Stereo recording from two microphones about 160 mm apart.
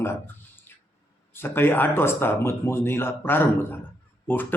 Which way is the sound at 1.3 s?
15° left (ahead or behind).